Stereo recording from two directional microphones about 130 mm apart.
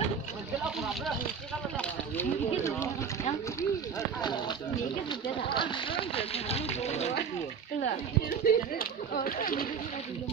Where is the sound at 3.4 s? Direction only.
25° left (ahead or behind); by 7.1 s 55° left (ahead or behind).